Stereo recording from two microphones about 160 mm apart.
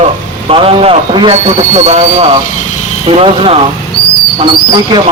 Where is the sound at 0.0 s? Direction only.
35° right (ahead or behind).